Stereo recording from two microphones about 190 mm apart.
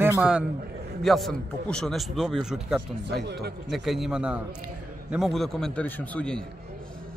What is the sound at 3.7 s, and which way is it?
A man's voice, centre (ahead or behind).